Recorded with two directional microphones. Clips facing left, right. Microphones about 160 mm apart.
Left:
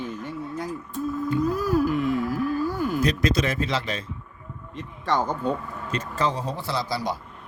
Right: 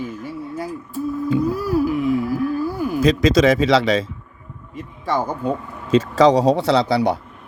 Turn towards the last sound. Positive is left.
turn(degrees=-65)  # may be behind; listen again after turning